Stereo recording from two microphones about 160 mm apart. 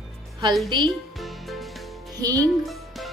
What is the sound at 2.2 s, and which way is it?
Speech, 20° right (ahead or behind).